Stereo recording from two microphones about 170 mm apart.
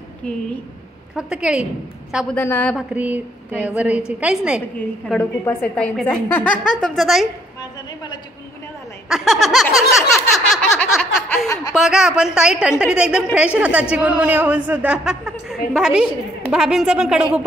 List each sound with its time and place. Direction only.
1.1 s a woman's voice: 5° right (ahead or behind)
2.3 s speech: 10° left (ahead or behind)
2.9 s a woman's voice: 10° right (ahead or behind)
9.1 s a woman's voice: centre (ahead or behind)
9.9 s a sound: centre (ahead or behind)
11.4 s speech: 20° left (ahead or behind)
11.7 s a woman's voice: centre (ahead or behind)